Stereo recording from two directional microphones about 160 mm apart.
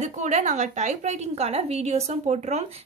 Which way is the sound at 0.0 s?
45° right (ahead or behind).